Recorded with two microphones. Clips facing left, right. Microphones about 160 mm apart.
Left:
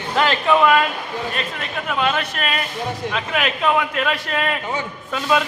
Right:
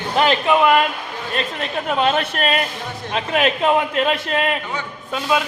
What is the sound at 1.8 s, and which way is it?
A man's voice, 30° right (ahead or behind).